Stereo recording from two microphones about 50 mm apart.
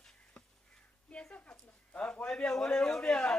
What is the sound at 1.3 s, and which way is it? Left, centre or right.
A woman's voice, left.